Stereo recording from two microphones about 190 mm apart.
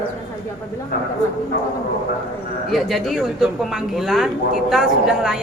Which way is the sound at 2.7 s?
Centre (ahead or behind).